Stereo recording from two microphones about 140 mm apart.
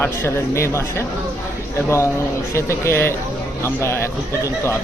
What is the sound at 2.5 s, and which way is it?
Speech, 20° left (ahead or behind).